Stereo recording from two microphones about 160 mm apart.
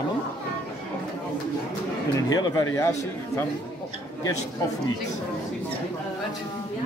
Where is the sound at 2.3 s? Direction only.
25° left (ahead or behind).